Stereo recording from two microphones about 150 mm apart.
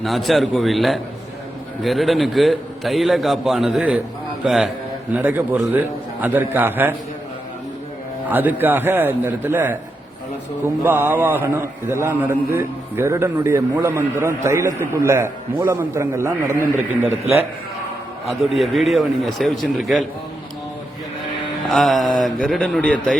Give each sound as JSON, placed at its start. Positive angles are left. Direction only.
{"t": 0.0, "sound": "a man's voice", "side_deg": 0}
{"t": 8.3, "sound": "a man's voice", "side_deg": -10}
{"t": 18.3, "sound": "a man's voice", "side_deg": 0}
{"t": 21.7, "sound": "a man's voice", "side_deg": 0}